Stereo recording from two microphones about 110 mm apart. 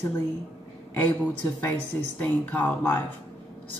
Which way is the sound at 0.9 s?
15° left (ahead or behind).